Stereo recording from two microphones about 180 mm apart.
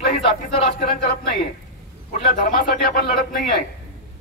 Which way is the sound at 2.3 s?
50° left (ahead or behind).